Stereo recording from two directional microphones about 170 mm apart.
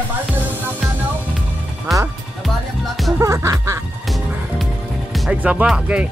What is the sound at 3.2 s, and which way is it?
Music, 20° right (ahead or behind).